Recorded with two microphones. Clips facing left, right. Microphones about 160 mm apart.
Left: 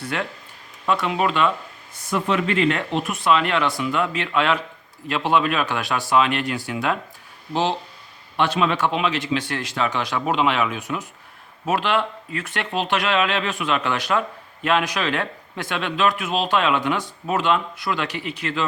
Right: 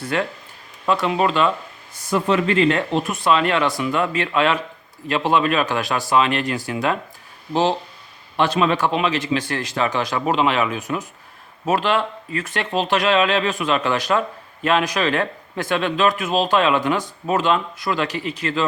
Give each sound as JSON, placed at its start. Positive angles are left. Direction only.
{"t": 0.0, "sound": "speech", "side_deg": -40}